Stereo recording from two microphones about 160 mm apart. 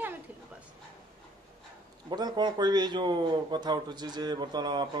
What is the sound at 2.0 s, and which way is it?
A man's voice, 25° right (ahead or behind).